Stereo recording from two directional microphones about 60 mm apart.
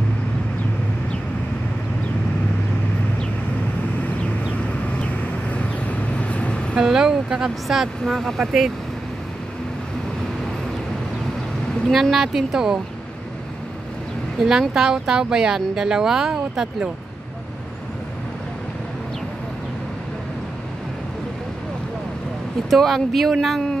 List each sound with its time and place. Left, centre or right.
5.5 s vehicle: left
6.8 s speech: centre
11.9 s speech: centre
14.4 s speech: centre
22.7 s speech: centre